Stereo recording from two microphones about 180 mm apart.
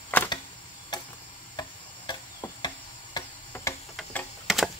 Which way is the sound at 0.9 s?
25° left (ahead or behind).